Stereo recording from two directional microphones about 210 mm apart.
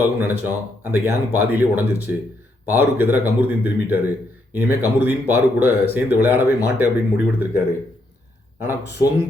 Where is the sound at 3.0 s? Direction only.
10° right (ahead or behind).